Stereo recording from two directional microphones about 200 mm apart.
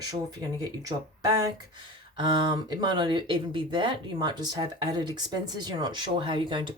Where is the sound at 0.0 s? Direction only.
20° right (ahead or behind).